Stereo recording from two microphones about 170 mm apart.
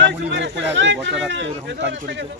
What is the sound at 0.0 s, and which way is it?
Speech, 90° right.